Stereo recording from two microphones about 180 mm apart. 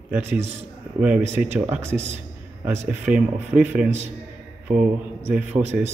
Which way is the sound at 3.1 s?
10° right (ahead or behind).